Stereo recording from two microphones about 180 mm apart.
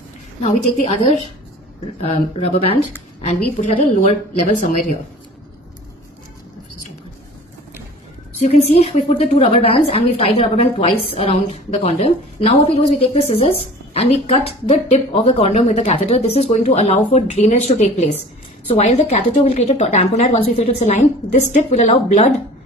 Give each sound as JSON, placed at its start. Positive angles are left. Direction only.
{"t": 0.4, "sound": "a woman's voice", "side_deg": 40}
{"t": 8.4, "sound": "speech", "side_deg": 35}